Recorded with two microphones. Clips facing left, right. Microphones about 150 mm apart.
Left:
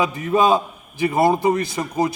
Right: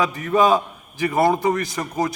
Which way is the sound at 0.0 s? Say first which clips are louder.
Even; 20° left (ahead or behind).